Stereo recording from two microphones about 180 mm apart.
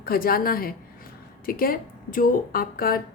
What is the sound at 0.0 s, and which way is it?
A woman's voice, 55° left (ahead or behind).